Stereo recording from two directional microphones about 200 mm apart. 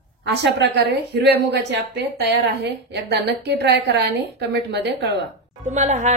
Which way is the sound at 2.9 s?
55° right (ahead or behind).